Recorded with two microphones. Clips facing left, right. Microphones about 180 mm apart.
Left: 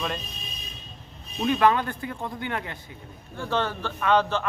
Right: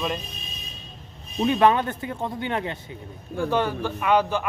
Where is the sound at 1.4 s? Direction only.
20° right (ahead or behind).